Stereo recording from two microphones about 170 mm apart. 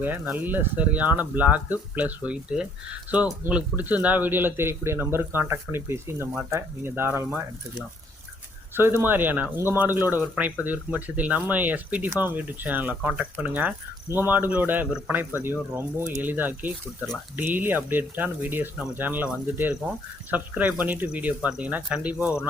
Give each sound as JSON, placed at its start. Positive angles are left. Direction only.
{"t": 0.0, "sound": "speech", "side_deg": -10}
{"t": 8.7, "sound": "speech", "side_deg": -15}